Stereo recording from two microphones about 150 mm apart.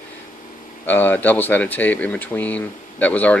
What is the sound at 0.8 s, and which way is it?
Speech, 15° left (ahead or behind).